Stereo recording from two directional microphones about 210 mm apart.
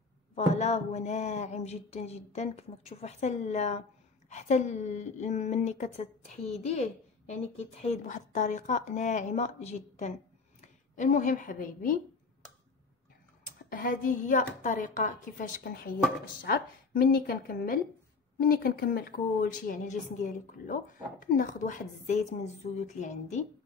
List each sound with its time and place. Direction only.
0.6 s a woman's voice: 30° left (ahead or behind)
13.7 s a woman's voice: 40° left (ahead or behind)